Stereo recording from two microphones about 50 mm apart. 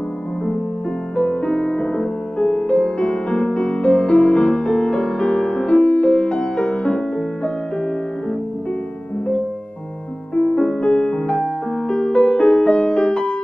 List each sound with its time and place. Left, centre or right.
1.1 s music: centre
10.3 s music: centre